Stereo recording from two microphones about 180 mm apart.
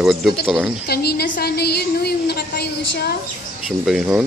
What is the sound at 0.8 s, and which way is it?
A woman's voice, 60° left (ahead or behind).